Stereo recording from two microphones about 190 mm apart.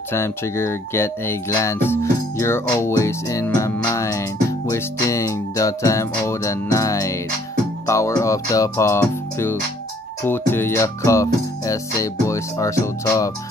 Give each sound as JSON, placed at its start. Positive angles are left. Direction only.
{"t": 0.1, "sound": "speech", "side_deg": 15}